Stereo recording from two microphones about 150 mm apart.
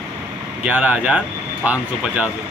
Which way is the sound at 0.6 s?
10° right (ahead or behind).